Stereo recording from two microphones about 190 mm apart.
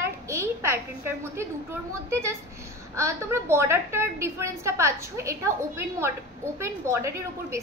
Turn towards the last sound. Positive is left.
turn(degrees=-15)  # may be behind; listen again after turning